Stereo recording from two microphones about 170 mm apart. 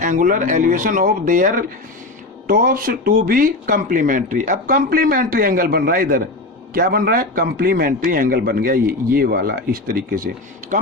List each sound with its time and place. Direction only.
0.0 s a man's voice: 50° right (ahead or behind)